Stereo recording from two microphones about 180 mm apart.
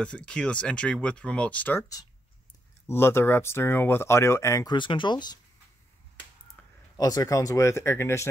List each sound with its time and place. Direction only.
0.0 s speech: 5° left (ahead or behind); by 5.4 s 25° left (ahead or behind)
7.0 s speech: 20° left (ahead or behind)